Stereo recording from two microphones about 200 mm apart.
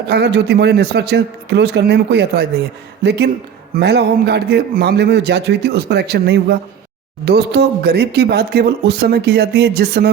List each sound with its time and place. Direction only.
0.1 s a man's voice: 55° right (ahead or behind)